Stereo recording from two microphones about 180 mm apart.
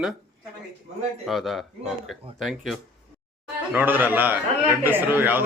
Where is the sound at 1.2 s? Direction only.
Centre (ahead or behind).